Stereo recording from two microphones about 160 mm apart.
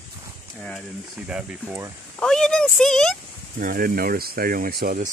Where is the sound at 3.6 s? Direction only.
60° right (ahead or behind).